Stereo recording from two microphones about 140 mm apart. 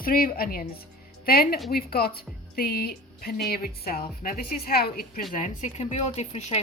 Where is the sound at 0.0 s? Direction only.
90° left.